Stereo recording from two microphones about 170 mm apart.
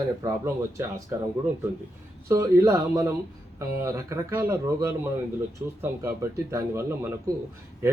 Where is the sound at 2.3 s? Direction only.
15° right (ahead or behind).